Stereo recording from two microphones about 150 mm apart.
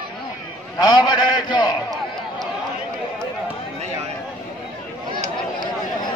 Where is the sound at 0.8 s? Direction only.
30° left (ahead or behind).